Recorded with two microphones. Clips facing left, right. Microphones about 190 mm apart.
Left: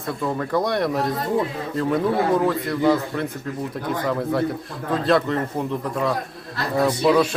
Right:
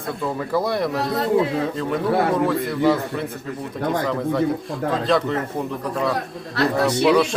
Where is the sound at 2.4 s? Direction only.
Centre (ahead or behind).